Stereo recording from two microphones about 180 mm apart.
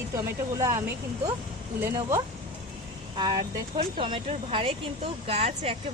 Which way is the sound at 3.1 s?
25° right (ahead or behind).